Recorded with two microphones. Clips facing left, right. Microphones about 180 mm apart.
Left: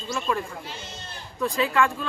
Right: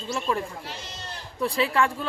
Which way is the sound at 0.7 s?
75° right (ahead or behind).